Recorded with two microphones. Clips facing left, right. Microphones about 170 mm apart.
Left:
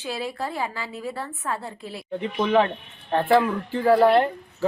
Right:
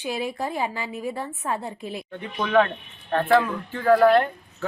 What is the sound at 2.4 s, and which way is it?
Speech, 25° left (ahead or behind).